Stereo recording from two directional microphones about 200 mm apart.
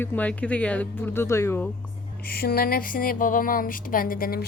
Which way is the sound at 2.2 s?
50° left (ahead or behind).